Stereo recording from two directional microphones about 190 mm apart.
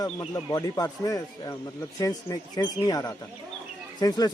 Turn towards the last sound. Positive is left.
turn(degrees=20)  # may be behind; listen again after turning